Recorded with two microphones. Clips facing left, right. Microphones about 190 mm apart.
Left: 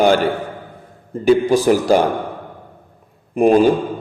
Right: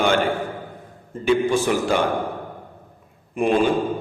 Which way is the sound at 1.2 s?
40° left (ahead or behind).